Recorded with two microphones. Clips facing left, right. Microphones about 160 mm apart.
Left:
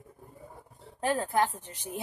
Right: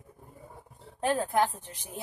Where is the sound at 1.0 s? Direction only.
Centre (ahead or behind).